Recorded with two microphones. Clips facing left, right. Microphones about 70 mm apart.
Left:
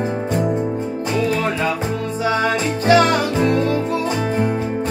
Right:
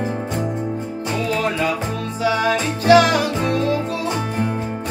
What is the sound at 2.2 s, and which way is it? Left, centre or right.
Music, left.